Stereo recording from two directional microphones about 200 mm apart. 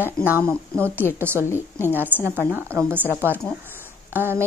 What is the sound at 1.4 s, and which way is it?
Speech, 10° left (ahead or behind).